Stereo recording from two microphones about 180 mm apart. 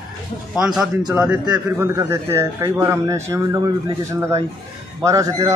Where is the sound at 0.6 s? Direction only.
Centre (ahead or behind).